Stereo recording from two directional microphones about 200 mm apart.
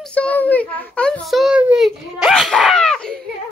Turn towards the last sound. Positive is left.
turn(degrees=5)  # may be behind; listen again after turning